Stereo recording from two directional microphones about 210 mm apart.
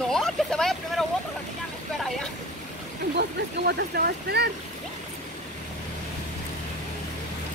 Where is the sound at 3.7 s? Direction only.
50° right (ahead or behind).